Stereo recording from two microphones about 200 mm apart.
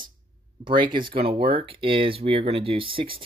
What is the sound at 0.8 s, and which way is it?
Speech, 25° right (ahead or behind).